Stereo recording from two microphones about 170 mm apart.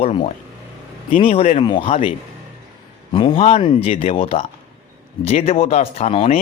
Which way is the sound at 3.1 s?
30° left (ahead or behind).